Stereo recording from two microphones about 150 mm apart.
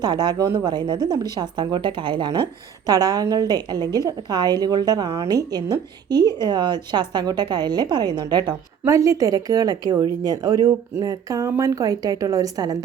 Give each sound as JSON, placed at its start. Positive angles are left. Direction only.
{"t": 0.0, "sound": "a woman's voice", "side_deg": -25}